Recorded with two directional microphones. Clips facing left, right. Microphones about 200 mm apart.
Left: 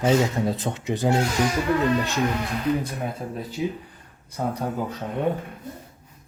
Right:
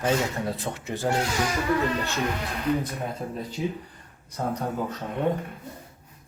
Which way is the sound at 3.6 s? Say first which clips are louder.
Left 3 dB; 5° left (ahead or behind).